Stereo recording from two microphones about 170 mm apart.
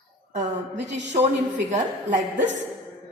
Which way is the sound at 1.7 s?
45° right (ahead or behind).